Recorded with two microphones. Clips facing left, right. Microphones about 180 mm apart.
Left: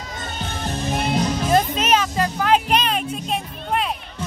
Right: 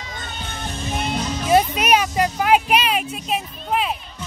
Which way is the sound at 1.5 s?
10° right (ahead or behind).